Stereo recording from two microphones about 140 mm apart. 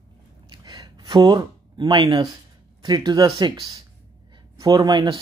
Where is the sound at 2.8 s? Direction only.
30° right (ahead or behind).